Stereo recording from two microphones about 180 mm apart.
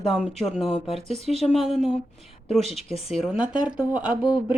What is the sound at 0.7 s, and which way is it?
Speech, 30° left (ahead or behind).